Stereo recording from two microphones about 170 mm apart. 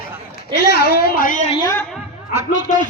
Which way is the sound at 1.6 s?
15° left (ahead or behind).